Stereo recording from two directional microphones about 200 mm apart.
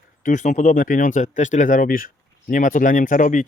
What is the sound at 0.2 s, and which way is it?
Speech, 40° left (ahead or behind).